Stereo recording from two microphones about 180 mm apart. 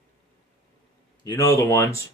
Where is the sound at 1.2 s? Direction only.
20° left (ahead or behind).